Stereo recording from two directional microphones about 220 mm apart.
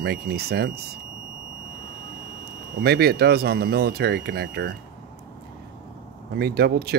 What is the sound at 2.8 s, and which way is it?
Speech, 45° right (ahead or behind).